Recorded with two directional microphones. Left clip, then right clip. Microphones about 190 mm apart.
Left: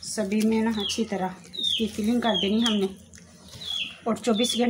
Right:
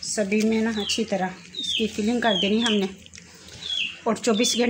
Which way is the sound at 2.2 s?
55° right (ahead or behind).